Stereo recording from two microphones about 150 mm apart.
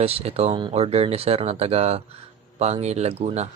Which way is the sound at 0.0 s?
40° right (ahead or behind).